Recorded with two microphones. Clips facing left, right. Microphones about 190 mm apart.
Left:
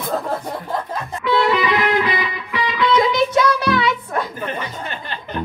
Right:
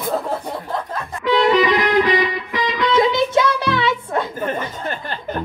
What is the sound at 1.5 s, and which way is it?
Speech, 35° right (ahead or behind).